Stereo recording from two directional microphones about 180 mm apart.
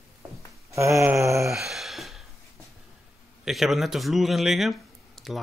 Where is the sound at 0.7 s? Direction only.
15° right (ahead or behind).